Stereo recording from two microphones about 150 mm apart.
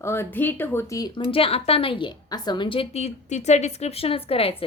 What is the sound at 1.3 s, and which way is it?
A woman's voice, 40° left (ahead or behind).